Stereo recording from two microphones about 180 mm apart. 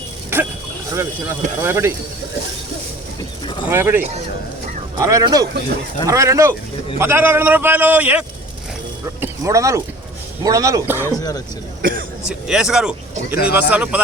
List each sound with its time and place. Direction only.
0.9 s a man's voice: 15° right (ahead or behind)
3.7 s a man's voice: 15° right (ahead or behind)
9.2 s a man's voice: 15° right (ahead or behind)
11.0 s speech: 20° left (ahead or behind)
11.8 s speech: 50° right (ahead or behind)
12.2 s a man's voice: 5° right (ahead or behind)